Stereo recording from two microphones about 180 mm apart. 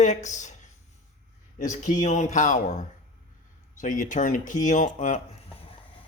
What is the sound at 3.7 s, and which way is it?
Speech, 45° left (ahead or behind).